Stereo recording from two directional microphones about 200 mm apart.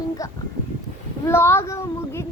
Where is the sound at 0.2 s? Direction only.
15° left (ahead or behind).